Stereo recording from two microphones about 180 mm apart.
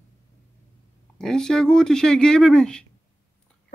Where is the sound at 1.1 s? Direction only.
5° left (ahead or behind).